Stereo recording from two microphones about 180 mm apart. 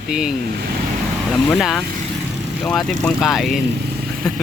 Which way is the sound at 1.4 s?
Centre (ahead or behind).